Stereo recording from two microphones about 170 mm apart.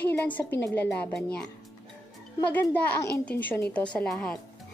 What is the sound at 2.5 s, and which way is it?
A woman's voice, 10° left (ahead or behind).